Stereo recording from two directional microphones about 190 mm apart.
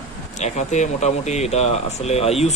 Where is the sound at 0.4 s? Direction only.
35° left (ahead or behind).